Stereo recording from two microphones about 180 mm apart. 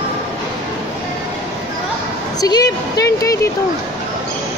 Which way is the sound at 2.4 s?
20° left (ahead or behind).